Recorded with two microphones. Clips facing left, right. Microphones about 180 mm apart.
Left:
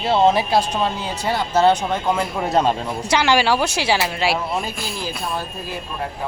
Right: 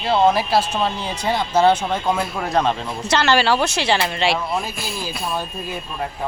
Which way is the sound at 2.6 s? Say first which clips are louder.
Left 1 dB; 10° left (ahead or behind).